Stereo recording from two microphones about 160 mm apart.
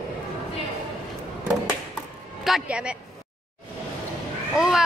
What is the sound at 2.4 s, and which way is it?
Speech, 5° right (ahead or behind).